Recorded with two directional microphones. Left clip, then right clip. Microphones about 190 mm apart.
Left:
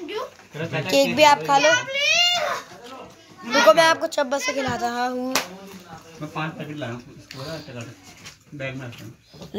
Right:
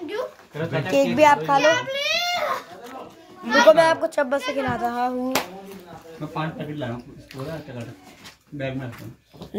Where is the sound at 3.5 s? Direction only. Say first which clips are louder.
Right 1 dB; centre (ahead or behind).